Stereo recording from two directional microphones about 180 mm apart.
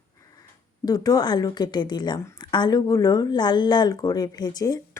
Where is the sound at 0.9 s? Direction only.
20° left (ahead or behind).